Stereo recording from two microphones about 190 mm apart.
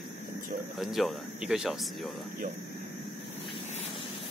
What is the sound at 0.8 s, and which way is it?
Speech, centre (ahead or behind).